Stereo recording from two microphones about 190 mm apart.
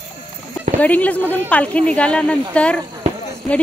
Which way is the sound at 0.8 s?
10° left (ahead or behind).